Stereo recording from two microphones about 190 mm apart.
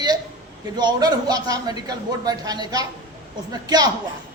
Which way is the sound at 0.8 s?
20° right (ahead or behind).